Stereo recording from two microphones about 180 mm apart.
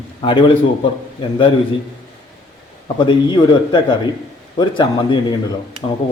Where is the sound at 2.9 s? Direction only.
25° left (ahead or behind).